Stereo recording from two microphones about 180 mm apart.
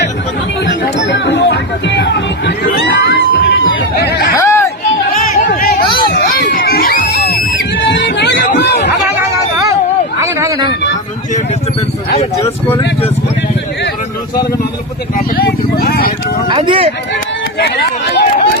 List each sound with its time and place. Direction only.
0.6 s music: 80° left
4.4 s chatter: 15° left (ahead or behind)
5.2 s a sound: 60° left (ahead or behind)
6.1 s screaming: 55° left (ahead or behind)
7.9 s music: 70° left (ahead or behind)
8.5 s chatter: 70° left (ahead or behind)
10.2 s a sound: 20° right (ahead or behind)
15.4 s vehicle: 60° left (ahead or behind)
16.5 s a sound: 30° right (ahead or behind)
17.6 s run: 65° left (ahead or behind)